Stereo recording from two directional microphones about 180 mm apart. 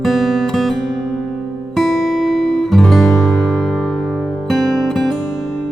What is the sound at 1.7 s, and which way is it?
Music, centre (ahead or behind).